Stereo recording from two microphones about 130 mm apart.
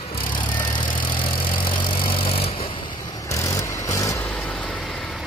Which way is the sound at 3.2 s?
25° left (ahead or behind).